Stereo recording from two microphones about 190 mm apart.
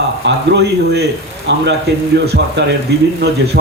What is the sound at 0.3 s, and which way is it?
A man's voice, 65° right (ahead or behind).